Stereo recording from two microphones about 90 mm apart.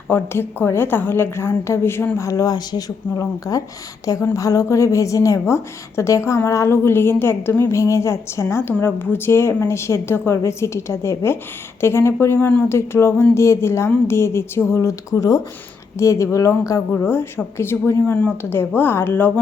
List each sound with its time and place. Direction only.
0.1 s a woman's voice: 25° left (ahead or behind)
2.1 s a woman's voice: 40° left (ahead or behind)
16.9 s a woman's voice: 20° left (ahead or behind)